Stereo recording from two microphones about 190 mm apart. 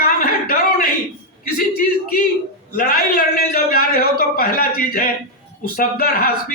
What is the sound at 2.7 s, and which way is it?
A man's voice, 50° left (ahead or behind).